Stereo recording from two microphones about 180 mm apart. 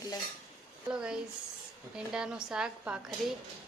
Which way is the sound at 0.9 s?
5° right (ahead or behind).